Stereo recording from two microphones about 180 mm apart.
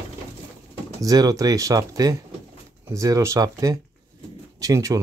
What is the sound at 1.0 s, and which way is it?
Speech, 20° right (ahead or behind).